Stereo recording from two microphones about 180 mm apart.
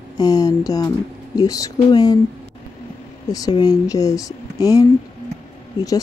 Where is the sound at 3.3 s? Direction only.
20° left (ahead or behind).